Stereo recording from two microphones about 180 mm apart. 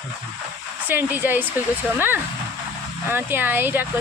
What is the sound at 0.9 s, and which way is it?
Speech, 10° right (ahead or behind).